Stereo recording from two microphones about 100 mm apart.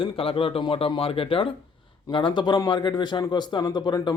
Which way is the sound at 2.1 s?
50° left (ahead or behind).